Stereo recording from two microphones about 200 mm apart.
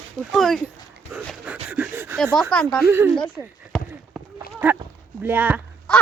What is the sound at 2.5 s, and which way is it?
Speech, 5° left (ahead or behind).